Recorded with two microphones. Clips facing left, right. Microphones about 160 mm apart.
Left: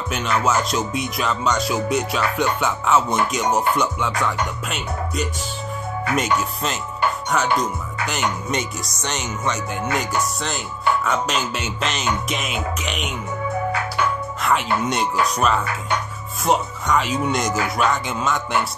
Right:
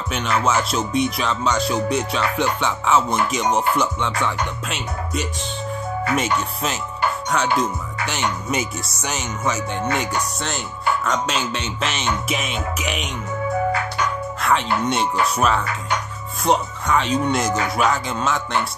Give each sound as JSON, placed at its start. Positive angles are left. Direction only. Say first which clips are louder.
{"t": 0.1, "sound": "speech", "louder": "even", "side_deg": 0}
{"t": 14.4, "sound": "speech", "louder": "right 1 dB", "side_deg": 0}